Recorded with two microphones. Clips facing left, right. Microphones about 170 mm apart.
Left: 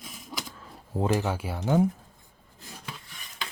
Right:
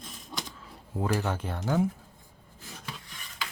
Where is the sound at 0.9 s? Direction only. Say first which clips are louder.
Left 3 dB; 25° left (ahead or behind).